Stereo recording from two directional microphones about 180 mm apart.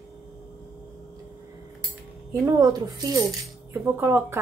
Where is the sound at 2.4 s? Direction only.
20° right (ahead or behind).